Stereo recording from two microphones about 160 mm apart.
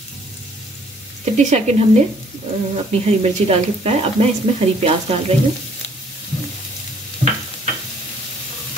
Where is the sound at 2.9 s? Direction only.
40° right (ahead or behind).